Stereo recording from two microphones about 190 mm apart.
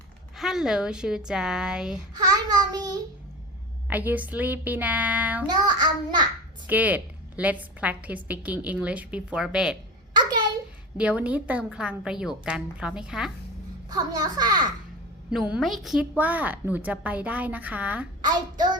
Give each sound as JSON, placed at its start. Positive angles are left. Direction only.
{"t": 0.3, "sound": "a woman's voice", "side_deg": 0}
{"t": 2.1, "sound": "child singing", "side_deg": -20}
{"t": 3.8, "sound": "a woman's voice", "side_deg": -10}
{"t": 5.5, "sound": "child singing", "side_deg": -20}
{"t": 6.7, "sound": "a woman's voice", "side_deg": -10}
{"t": 10.2, "sound": "a sound", "side_deg": -20}
{"t": 10.9, "sound": "a woman's voice", "side_deg": -5}
{"t": 13.9, "sound": "child singing", "side_deg": -20}
{"t": 15.3, "sound": "a woman's voice", "side_deg": -5}
{"t": 18.2, "sound": "a child's voice", "side_deg": -20}